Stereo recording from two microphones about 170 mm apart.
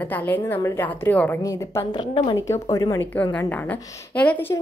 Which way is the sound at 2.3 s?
20° left (ahead or behind).